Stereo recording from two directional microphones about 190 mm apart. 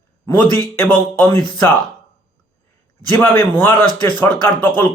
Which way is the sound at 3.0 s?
10° left (ahead or behind).